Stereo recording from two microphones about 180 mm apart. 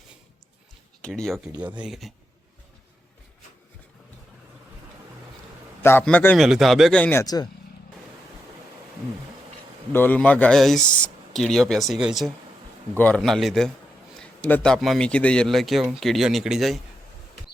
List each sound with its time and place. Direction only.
1.0 s a man's voice: 5° left (ahead or behind)
5.8 s speech: 10° left (ahead or behind)
9.9 s a man's voice: 10° left (ahead or behind)